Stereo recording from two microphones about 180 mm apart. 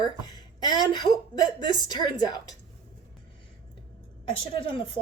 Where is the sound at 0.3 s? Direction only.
25° left (ahead or behind).